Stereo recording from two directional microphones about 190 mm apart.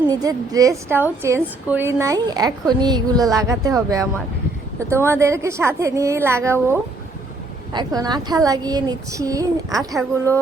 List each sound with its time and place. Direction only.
0.1 s a woman's voice: 20° right (ahead or behind)
9.7 s a child's voice: centre (ahead or behind)